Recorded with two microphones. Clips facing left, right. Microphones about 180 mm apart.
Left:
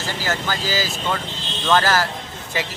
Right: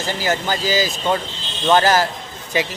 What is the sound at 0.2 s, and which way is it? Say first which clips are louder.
Speech: right 4 dB; 20° right (ahead or behind).